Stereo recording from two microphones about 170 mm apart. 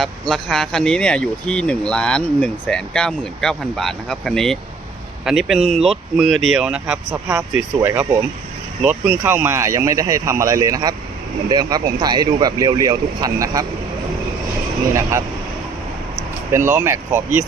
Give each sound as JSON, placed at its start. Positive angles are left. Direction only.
{"t": 0.0, "sound": "speech", "side_deg": 0}
{"t": 7.1, "sound": "speech", "side_deg": -20}
{"t": 16.5, "sound": "speech", "side_deg": -15}